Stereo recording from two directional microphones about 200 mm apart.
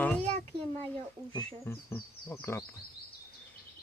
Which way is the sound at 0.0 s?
5° left (ahead or behind).